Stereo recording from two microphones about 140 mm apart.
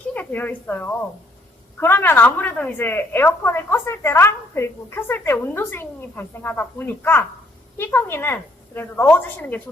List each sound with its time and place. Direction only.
0.1 s a woman's voice: 10° left (ahead or behind)